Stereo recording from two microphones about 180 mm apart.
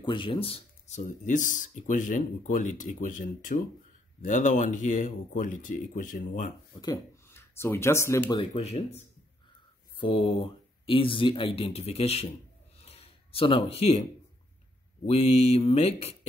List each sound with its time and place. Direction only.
0.0 s speech: 25° left (ahead or behind); by 6.5 s 45° left (ahead or behind)
6.8 s speech: 20° left (ahead or behind)
8.4 s speech: 35° left (ahead or behind)
12.8 s a sound: 35° left (ahead or behind)
15.0 s speech: 35° left (ahead or behind)